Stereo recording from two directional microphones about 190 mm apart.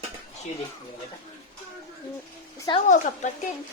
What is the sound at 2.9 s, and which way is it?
Speech, 40° left (ahead or behind).